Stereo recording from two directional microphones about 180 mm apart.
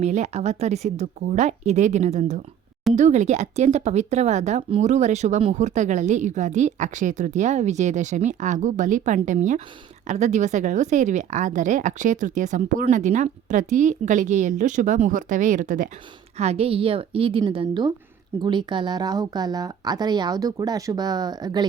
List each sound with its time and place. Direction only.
0.0 s speech: 40° right (ahead or behind)
16.4 s a woman's voice: 35° right (ahead or behind)